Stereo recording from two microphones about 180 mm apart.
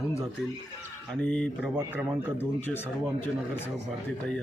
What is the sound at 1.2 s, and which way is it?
Speech, 5° left (ahead or behind).